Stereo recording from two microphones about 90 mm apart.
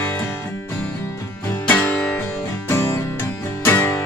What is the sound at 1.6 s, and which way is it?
Music, 20° left (ahead or behind).